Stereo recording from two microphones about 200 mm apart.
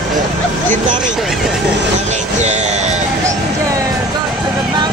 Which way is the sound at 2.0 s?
35° right (ahead or behind).